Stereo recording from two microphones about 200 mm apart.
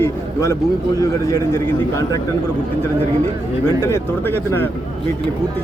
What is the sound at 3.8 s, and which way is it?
Speech, 15° left (ahead or behind).